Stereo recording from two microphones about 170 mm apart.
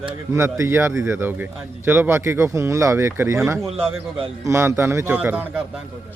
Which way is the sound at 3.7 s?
35° right (ahead or behind).